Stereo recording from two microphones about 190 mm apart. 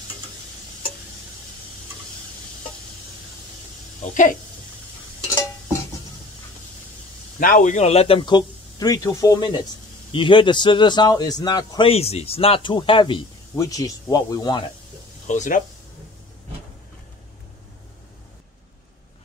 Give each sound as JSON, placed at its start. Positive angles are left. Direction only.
{"t": 4.1, "sound": "speech", "side_deg": 45}
{"t": 7.3, "sound": "speech", "side_deg": 45}
{"t": 11.9, "sound": "speech", "side_deg": 35}
{"t": 15.2, "sound": "speech", "side_deg": 40}